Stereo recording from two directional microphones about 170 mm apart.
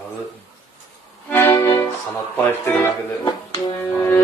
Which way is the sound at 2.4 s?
10° left (ahead or behind).